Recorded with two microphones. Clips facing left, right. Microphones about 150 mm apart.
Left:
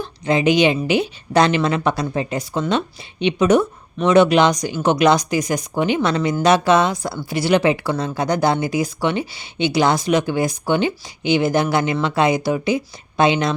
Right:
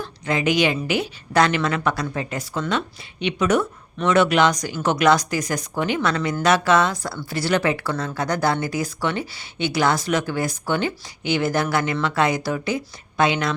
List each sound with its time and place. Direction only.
0.0 s a woman's voice: 25° left (ahead or behind)